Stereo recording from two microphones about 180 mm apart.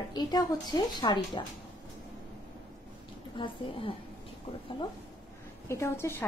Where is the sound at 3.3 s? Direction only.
30° left (ahead or behind).